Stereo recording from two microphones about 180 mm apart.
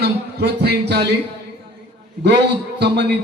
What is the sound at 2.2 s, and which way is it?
Speech, 70° right (ahead or behind).